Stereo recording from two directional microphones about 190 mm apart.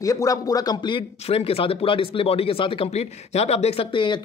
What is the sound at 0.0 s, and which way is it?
A man's voice, 15° left (ahead or behind).